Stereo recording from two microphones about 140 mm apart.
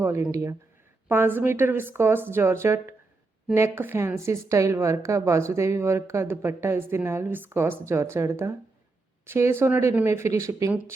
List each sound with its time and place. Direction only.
0.0 s a woman's voice: 20° right (ahead or behind)